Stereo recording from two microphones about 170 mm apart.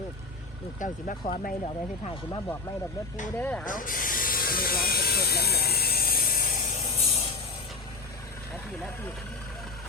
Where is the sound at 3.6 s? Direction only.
50° left (ahead or behind).